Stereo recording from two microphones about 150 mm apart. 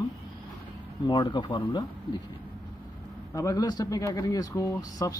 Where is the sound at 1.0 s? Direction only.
30° left (ahead or behind).